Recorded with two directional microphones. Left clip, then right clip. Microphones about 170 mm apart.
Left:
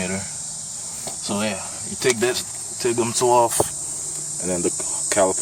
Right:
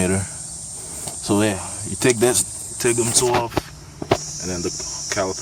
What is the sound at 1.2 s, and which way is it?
Speech, 35° right (ahead or behind).